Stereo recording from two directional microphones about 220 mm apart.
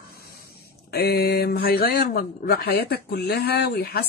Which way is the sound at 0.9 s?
45° left (ahead or behind).